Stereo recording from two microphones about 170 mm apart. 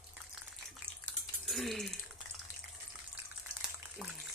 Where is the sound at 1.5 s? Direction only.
Centre (ahead or behind).